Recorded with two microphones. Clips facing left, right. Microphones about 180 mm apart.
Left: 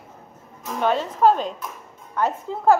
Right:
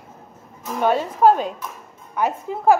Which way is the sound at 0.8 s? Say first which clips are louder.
Right 2 dB; 10° right (ahead or behind).